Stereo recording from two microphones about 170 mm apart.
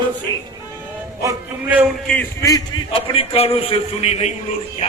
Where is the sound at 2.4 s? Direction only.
25° left (ahead or behind); by 4.3 s 40° left (ahead or behind).